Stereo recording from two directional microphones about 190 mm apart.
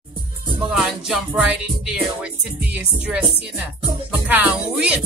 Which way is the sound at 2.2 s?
5° right (ahead or behind).